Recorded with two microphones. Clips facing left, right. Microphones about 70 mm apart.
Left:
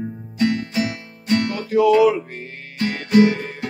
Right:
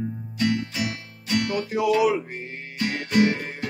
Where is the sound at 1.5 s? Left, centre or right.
Right.